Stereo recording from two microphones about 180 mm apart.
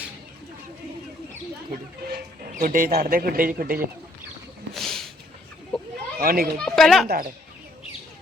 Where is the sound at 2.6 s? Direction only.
45° right (ahead or behind).